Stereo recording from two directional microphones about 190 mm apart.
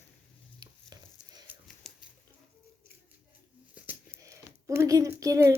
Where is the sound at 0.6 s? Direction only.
20° right (ahead or behind).